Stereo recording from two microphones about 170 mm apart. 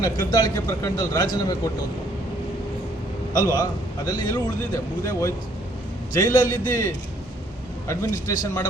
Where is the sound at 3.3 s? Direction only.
20° left (ahead or behind).